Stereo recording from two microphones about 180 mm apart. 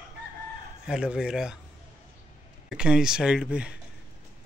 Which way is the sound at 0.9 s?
5° right (ahead or behind).